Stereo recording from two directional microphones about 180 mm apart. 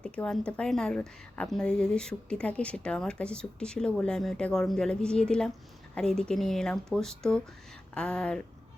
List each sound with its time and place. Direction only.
0.0 s speech: 5° left (ahead or behind)